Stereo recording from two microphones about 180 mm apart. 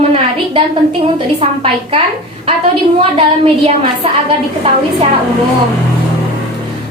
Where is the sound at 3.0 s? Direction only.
30° right (ahead or behind).